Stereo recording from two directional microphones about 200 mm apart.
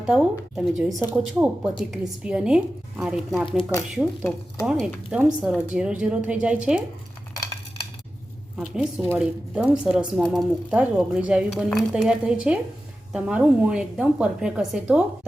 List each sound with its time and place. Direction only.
0.0 s a woman's voice: 5° right (ahead or behind)
3.6 s speech: 15° left (ahead or behind)
4.6 s a woman's voice: 5° right (ahead or behind)
8.5 s a woman's voice: 5° right (ahead or behind)